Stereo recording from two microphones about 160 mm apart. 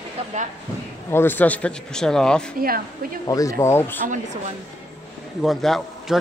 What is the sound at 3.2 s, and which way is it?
Speech, 20° left (ahead or behind).